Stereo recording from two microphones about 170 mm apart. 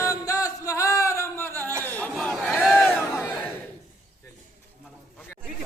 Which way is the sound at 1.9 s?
10° left (ahead or behind).